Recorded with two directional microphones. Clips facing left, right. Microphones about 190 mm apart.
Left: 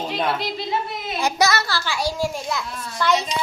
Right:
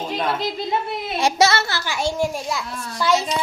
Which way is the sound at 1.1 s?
25° right (ahead or behind).